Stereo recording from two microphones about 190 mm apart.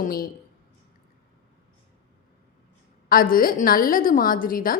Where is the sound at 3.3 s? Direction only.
50° left (ahead or behind).